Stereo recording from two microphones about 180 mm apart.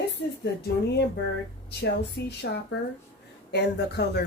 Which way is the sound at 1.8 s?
65° left (ahead or behind).